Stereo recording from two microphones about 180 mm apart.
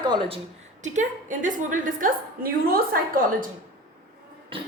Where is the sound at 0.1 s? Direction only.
25° right (ahead or behind).